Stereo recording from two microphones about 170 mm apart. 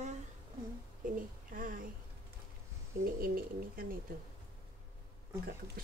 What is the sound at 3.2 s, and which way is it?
Speech, 60° right (ahead or behind).